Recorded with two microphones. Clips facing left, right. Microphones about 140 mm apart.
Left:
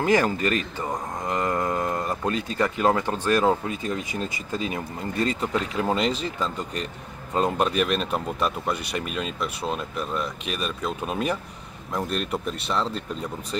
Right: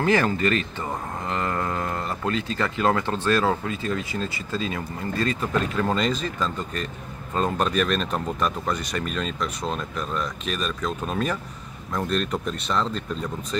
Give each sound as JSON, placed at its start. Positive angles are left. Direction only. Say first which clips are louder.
{"t": 0.0, "sound": "speech", "louder": "even", "side_deg": 15}